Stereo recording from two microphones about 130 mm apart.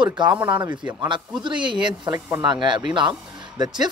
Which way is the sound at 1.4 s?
35° right (ahead or behind).